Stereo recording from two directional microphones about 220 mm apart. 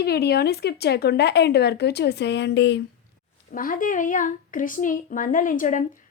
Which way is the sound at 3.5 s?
40° left (ahead or behind).